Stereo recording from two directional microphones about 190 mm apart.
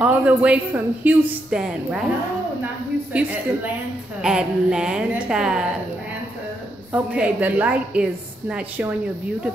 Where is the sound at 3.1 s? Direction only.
5° right (ahead or behind).